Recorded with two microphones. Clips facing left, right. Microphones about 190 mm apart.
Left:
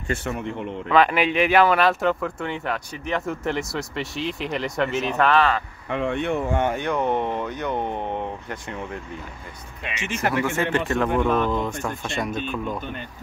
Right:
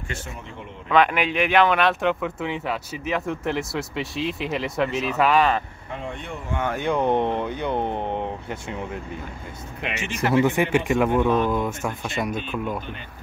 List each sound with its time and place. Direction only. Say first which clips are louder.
0.1 s speech: left 9 dB; 65° left (ahead or behind)
0.8 s speech: left 1 dB; centre (ahead or behind)
5.9 s speech: left 9 dB; 70° left (ahead or behind)
6.8 s a man's voice: right 2 dB; 10° right (ahead or behind)
7.4 s a man's voice: right 1 dB; 10° right (ahead or behind)
10.3 s a man's voice: right 6 dB; 15° right (ahead or behind)